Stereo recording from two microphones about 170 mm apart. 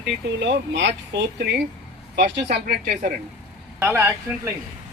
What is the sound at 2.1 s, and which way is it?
Speech, 75° right (ahead or behind).